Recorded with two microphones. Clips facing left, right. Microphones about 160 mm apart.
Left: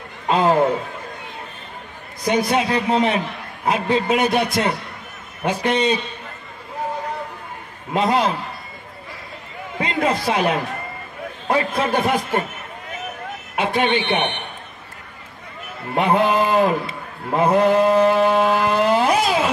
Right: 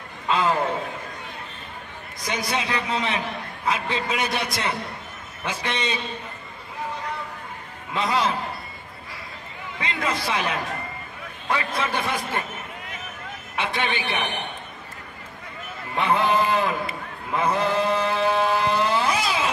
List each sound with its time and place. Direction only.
0.3 s a man's voice: 45° left (ahead or behind)
2.2 s a man's voice: 40° left (ahead or behind)
7.9 s a man's voice: 40° left (ahead or behind)
9.8 s a man's voice: 40° left (ahead or behind)
13.6 s a man's voice: 40° left (ahead or behind)
15.9 s a man's voice: 40° left (ahead or behind)
17.3 s mantra: 45° left (ahead or behind)